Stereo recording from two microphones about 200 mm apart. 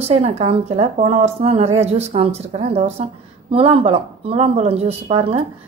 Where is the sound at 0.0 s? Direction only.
30° right (ahead or behind).